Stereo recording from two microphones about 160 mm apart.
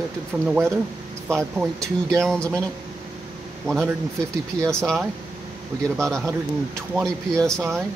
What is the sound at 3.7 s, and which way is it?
Speech, 5° right (ahead or behind).